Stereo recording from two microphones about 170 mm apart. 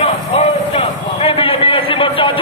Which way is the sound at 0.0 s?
40° left (ahead or behind).